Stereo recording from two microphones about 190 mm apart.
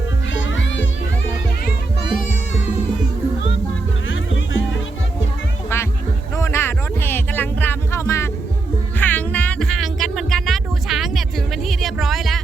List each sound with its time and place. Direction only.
0.3 s music: 80° left
4.1 s music: 90° left
5.7 s music: 10° left (ahead or behind)